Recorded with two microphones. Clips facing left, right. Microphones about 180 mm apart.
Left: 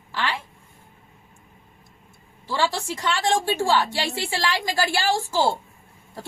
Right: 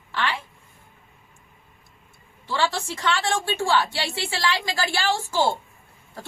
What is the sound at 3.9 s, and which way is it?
Speech, 40° left (ahead or behind).